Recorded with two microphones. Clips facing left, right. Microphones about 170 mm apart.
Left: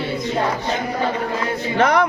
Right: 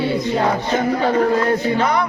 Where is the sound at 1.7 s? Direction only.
80° left.